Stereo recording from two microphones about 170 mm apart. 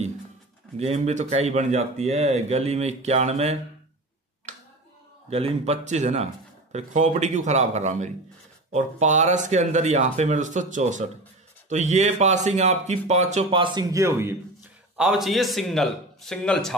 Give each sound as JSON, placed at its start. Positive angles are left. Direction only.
{"t": 0.7, "sound": "speech", "side_deg": -40}
{"t": 5.3, "sound": "speech", "side_deg": -35}
{"t": 15.0, "sound": "a man's voice", "side_deg": 0}